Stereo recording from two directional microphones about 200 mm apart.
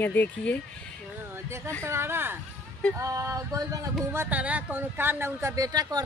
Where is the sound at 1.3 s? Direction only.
15° right (ahead or behind).